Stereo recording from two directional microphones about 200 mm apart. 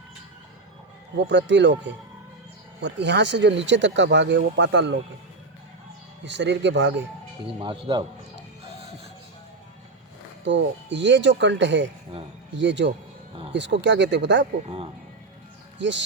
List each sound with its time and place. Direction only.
1.1 s speech: 60° right (ahead or behind)
6.2 s speech: 60° right (ahead or behind)
7.6 s speech: 25° right (ahead or behind)
10.4 s speech: 65° right (ahead or behind)
15.8 s speech: 65° right (ahead or behind)